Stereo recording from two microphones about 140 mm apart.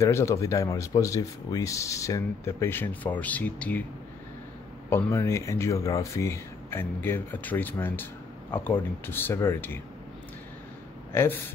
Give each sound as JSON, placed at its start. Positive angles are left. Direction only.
{"t": 0.0, "sound": "speech", "side_deg": 20}
{"t": 4.8, "sound": "speech", "side_deg": 20}